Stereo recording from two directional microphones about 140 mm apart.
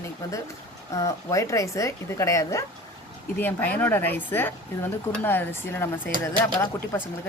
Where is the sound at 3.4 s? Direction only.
10° left (ahead or behind).